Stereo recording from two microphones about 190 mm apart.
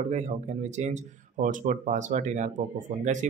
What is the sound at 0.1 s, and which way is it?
Speech, 35° right (ahead or behind).